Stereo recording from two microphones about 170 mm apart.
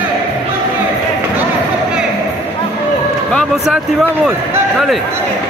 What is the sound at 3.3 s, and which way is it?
Speech, centre (ahead or behind).